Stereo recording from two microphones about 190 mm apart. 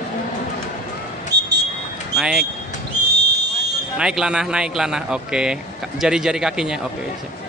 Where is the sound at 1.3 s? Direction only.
60° right (ahead or behind).